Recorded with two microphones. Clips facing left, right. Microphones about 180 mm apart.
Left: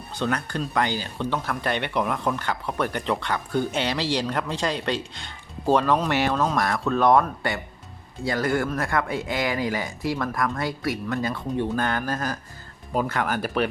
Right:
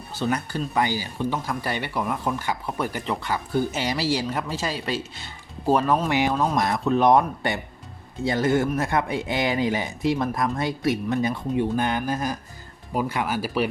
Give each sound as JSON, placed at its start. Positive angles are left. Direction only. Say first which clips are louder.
{"t": 0.1, "sound": "speech", "louder": "right 1 dB", "side_deg": -10}